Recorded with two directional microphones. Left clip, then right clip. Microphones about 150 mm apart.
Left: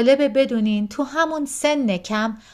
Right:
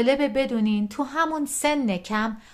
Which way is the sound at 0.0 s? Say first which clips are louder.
Left 5 dB; 20° left (ahead or behind).